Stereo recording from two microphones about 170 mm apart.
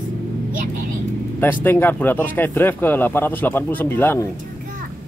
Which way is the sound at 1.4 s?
10° left (ahead or behind).